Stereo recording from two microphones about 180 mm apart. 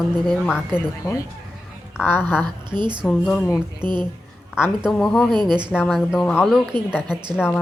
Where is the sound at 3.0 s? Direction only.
Centre (ahead or behind).